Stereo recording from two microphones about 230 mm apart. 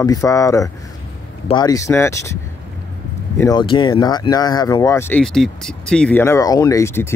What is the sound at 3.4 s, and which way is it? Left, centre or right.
Speech, centre.